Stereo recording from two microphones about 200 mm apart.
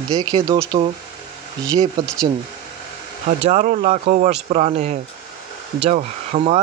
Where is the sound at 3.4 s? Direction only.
40° right (ahead or behind).